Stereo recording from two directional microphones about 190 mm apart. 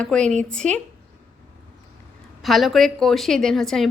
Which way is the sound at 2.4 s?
Centre (ahead or behind).